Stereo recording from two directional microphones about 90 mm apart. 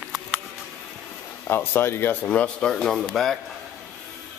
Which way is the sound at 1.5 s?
25° left (ahead or behind).